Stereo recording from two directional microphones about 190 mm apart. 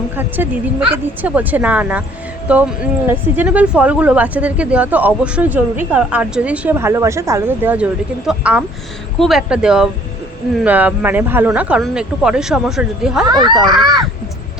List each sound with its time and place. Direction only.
0.2 s speech: 10° right (ahead or behind)
13.2 s speech: 20° right (ahead or behind)